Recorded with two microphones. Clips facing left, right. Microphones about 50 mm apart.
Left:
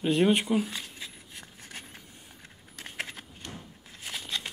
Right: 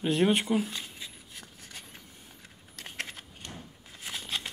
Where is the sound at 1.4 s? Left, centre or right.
Centre.